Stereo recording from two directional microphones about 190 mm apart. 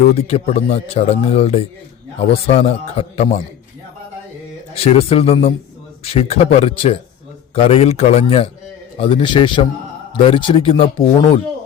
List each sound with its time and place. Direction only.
0.1 s speech: 30° left (ahead or behind)
4.7 s speech: 30° left (ahead or behind)